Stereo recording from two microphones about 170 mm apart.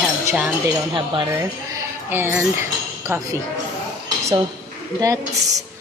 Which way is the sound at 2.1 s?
15° right (ahead or behind).